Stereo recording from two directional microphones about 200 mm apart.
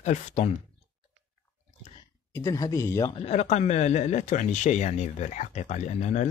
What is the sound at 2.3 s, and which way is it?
Speech, 15° left (ahead or behind).